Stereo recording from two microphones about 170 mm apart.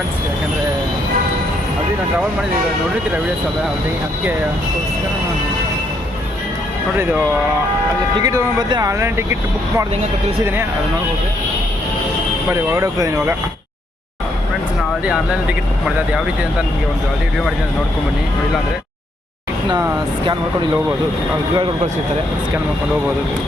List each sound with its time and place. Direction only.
6.9 s speech: 10° right (ahead or behind)
12.7 s speech: 20° right (ahead or behind)
15.0 s speech: 5° right (ahead or behind)